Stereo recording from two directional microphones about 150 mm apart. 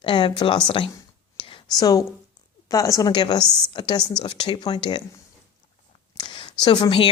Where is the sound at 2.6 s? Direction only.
20° left (ahead or behind).